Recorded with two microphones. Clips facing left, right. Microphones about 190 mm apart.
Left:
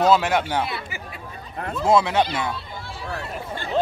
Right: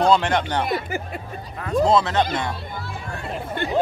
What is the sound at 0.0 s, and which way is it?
Speech, 5° left (ahead or behind).